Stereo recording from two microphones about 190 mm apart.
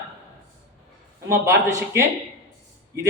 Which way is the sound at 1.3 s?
15° right (ahead or behind).